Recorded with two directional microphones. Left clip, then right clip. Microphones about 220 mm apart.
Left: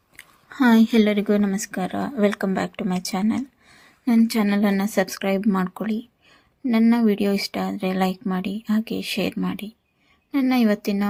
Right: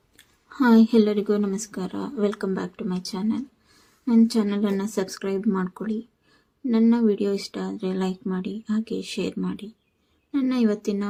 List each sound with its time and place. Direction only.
0.5 s speech: 25° left (ahead or behind)